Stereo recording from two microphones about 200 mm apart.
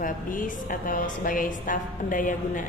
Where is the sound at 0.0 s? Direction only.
40° left (ahead or behind).